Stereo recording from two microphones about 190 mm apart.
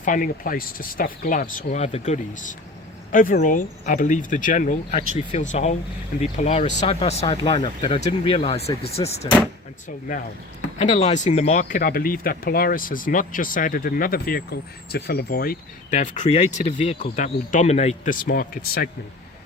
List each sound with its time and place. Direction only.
0.0 s speech: 45° left (ahead or behind)
10.8 s speech: 40° left (ahead or behind)
16.0 s speech: 40° left (ahead or behind)